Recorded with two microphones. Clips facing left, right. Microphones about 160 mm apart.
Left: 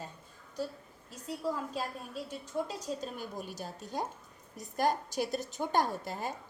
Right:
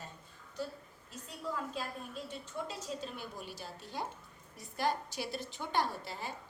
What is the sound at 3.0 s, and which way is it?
A woman's voice, 45° left (ahead or behind).